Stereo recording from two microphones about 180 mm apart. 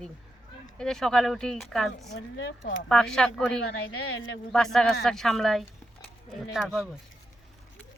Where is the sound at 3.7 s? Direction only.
80° left.